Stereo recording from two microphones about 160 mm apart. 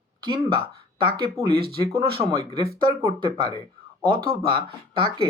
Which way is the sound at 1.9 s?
35° right (ahead or behind).